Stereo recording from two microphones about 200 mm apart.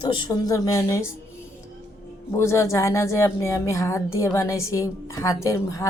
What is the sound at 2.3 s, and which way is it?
Speech, 15° left (ahead or behind).